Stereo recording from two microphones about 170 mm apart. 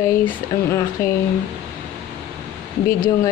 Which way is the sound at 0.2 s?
15° left (ahead or behind).